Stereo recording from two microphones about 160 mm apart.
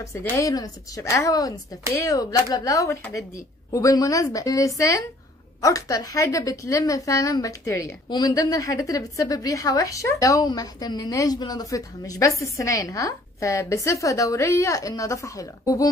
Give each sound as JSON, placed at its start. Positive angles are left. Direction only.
{"t": 0.0, "sound": "a woman's voice", "side_deg": 20}